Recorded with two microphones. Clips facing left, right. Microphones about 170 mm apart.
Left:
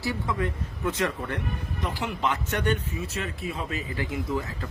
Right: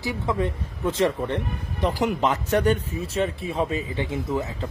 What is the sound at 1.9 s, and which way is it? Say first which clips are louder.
A man's voice: right 6 dB; 40° right (ahead or behind).